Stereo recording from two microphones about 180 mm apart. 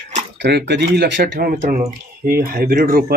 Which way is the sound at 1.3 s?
50° right (ahead or behind).